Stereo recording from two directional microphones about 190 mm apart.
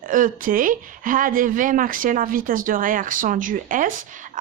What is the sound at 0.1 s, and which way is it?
Speech, 45° right (ahead or behind).